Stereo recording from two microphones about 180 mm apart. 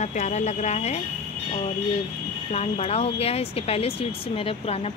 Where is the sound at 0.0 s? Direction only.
40° left (ahead or behind).